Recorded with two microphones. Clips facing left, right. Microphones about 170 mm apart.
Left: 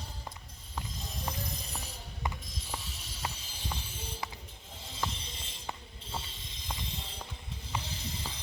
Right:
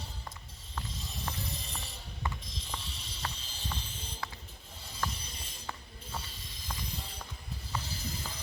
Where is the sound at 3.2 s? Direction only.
10° left (ahead or behind).